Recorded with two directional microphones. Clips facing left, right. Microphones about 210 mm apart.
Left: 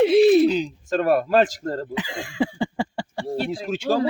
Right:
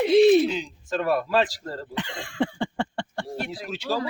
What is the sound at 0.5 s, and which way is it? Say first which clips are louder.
Speech: left 6 dB; 40° left (ahead or behind).